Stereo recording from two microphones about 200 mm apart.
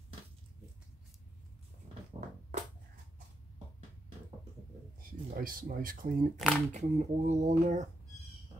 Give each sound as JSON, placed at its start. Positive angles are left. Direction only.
{"t": 5.0, "sound": "speech", "side_deg": -45}
{"t": 6.3, "sound": "speech", "side_deg": 0}
{"t": 6.7, "sound": "speech", "side_deg": -35}